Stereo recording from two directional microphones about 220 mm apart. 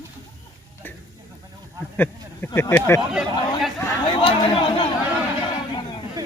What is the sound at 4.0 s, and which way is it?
Chatter, 25° left (ahead or behind).